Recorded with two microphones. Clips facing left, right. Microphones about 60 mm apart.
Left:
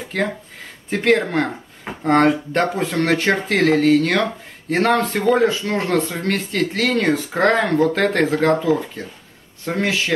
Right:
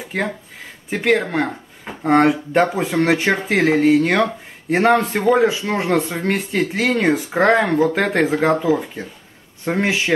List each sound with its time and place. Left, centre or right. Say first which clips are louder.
0.1 s speech: left 1 dB; centre